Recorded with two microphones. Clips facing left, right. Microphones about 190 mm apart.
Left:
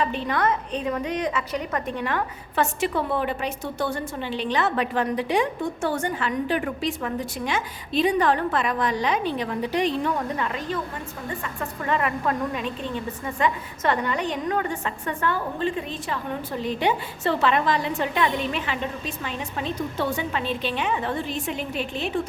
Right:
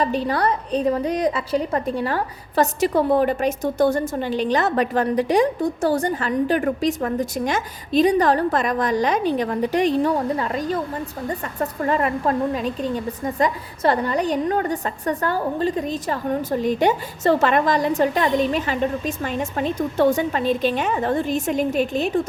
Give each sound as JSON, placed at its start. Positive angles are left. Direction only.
{"t": 0.0, "sound": "a woman's voice", "side_deg": -40}